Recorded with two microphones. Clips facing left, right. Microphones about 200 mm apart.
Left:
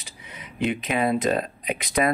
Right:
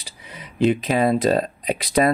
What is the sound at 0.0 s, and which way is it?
Speech, 35° right (ahead or behind).